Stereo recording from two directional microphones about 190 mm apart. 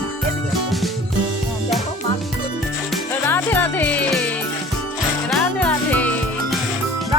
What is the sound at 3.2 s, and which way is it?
Music, 10° left (ahead or behind).